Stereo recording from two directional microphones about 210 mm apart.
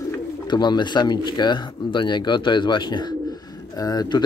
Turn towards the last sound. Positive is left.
turn(degrees=20)  # may be behind; listen again after turning